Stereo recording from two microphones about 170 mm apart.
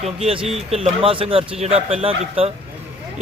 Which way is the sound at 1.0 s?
30° right (ahead or behind).